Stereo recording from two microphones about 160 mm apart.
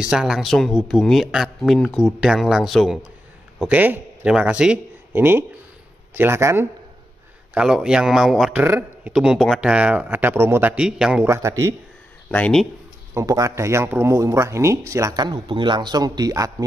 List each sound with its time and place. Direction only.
0.0 s a man's voice: 5° right (ahead or behind)
7.5 s a man's voice: 5° right (ahead or behind)
11.2 s speech: 20° right (ahead or behind)
12.3 s speech: 10° left (ahead or behind)
13.1 s speech: 20° right (ahead or behind)